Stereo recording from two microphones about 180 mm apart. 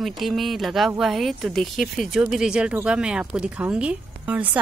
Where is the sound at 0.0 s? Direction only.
Centre (ahead or behind).